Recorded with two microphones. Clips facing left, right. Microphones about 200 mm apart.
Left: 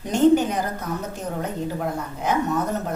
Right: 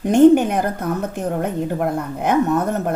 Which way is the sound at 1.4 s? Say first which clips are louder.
Right 5 dB; 60° right (ahead or behind).